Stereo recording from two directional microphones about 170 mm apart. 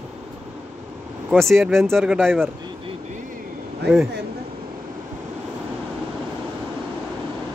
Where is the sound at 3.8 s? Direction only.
75° right (ahead or behind).